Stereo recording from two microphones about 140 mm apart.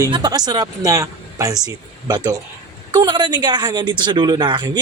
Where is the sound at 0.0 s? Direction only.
30° right (ahead or behind).